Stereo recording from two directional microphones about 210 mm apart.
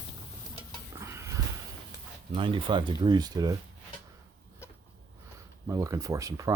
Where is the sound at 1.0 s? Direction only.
15° right (ahead or behind).